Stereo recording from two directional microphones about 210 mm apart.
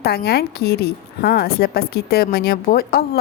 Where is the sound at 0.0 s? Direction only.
50° left (ahead or behind).